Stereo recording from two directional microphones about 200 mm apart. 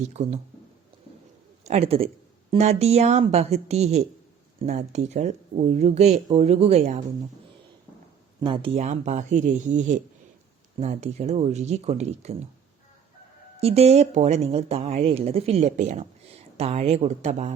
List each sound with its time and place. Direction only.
0.1 s speech: 35° right (ahead or behind)
1.6 s a man's voice: 30° right (ahead or behind)
8.4 s speech: 25° right (ahead or behind)
13.6 s speech: 30° right (ahead or behind)